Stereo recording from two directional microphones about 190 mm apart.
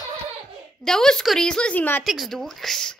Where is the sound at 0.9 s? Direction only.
5° left (ahead or behind).